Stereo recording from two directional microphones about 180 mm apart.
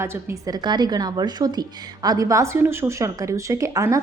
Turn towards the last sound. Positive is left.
turn(degrees=-15)  # may be behind; listen again after turning